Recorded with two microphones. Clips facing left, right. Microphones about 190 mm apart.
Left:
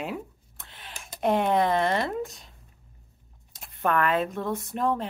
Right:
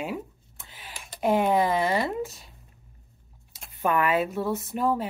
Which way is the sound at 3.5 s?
10° right (ahead or behind).